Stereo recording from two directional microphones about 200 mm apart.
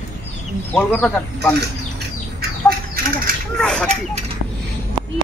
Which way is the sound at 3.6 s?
5° left (ahead or behind).